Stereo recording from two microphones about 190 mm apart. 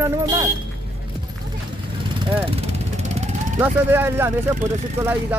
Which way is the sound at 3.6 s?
10° right (ahead or behind).